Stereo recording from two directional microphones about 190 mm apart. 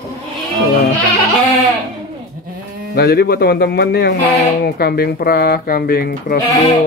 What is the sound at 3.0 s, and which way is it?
Speech, 55° left (ahead or behind).